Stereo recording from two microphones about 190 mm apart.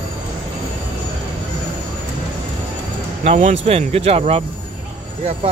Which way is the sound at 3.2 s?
35° right (ahead or behind).